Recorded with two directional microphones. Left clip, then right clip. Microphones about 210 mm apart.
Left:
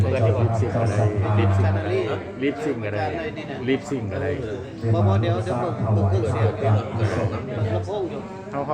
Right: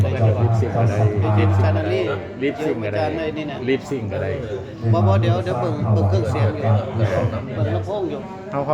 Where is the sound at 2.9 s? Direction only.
40° right (ahead or behind).